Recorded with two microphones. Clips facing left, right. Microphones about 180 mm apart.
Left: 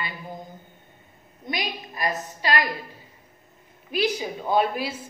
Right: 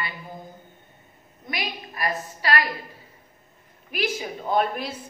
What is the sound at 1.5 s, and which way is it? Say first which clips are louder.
A woman's voice: left 2 dB; 20° left (ahead or behind).